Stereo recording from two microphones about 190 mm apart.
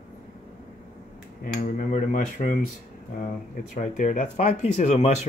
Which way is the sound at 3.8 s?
40° left (ahead or behind).